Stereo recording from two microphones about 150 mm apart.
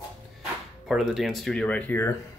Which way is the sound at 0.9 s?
Centre (ahead or behind).